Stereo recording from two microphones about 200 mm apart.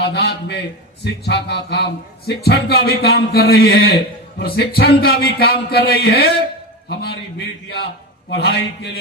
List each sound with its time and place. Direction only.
0.0 s a man's voice: 55° left (ahead or behind)